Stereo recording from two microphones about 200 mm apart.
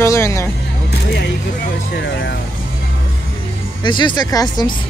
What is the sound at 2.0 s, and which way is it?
Speech, 60° left (ahead or behind).